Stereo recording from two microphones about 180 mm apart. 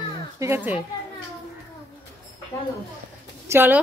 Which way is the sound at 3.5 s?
10° right (ahead or behind).